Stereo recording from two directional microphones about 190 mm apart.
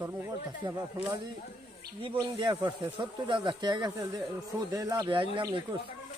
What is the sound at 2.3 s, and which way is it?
Speech, 20° right (ahead or behind).